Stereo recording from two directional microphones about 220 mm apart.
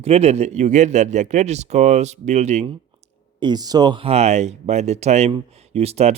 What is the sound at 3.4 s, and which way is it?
Speech, 20° right (ahead or behind).